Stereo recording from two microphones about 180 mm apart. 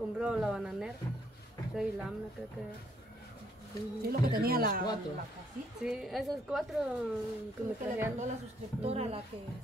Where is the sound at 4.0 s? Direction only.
55° right (ahead or behind).